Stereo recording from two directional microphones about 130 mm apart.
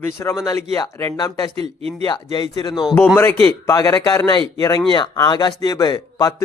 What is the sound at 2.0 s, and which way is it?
A man's voice, 35° left (ahead or behind).